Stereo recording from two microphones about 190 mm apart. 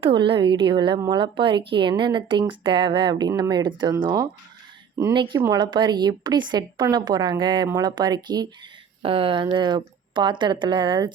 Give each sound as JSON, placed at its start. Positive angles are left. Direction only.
{"t": 0.0, "sound": "a woman's voice", "side_deg": -25}